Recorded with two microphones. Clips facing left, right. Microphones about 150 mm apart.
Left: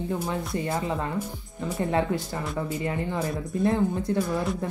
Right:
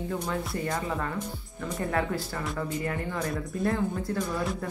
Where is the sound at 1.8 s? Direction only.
25° left (ahead or behind).